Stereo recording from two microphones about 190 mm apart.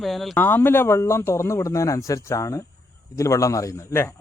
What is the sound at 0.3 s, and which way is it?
A man's voice, 10° left (ahead or behind).